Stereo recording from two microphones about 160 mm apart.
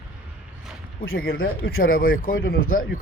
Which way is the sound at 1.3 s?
70° left (ahead or behind).